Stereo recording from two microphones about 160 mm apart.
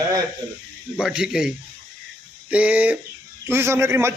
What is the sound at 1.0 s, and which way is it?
A man's voice, 5° right (ahead or behind).